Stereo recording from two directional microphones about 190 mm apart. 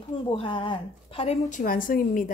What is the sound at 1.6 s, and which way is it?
Speech, 50° left (ahead or behind).